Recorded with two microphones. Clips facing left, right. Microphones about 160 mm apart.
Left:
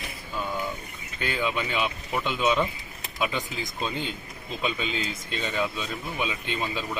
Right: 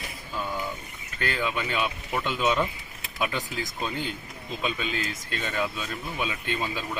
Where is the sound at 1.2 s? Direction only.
15° left (ahead or behind).